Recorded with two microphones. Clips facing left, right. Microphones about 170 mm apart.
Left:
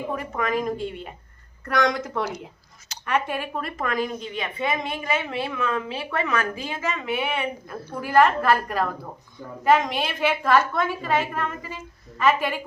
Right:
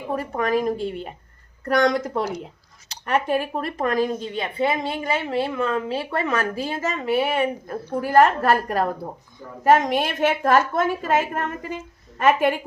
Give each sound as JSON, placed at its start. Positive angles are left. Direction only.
{"t": 0.1, "sound": "a woman's voice", "side_deg": -35}